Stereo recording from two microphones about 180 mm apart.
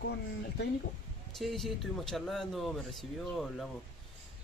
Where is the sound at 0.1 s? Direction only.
65° left (ahead or behind).